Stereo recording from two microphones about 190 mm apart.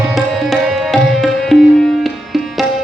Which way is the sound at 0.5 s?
Centre (ahead or behind).